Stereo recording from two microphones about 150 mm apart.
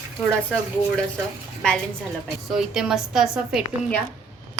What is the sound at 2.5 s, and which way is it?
A woman's voice, 5° right (ahead or behind).